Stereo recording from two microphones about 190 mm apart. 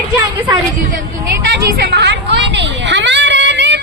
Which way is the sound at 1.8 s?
55° right (ahead or behind).